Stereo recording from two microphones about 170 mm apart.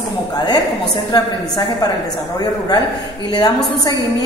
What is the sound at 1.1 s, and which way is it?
Speech, 25° left (ahead or behind).